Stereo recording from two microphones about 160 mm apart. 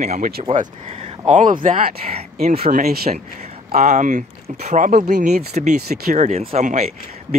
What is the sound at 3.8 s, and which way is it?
Speech, 50° right (ahead or behind).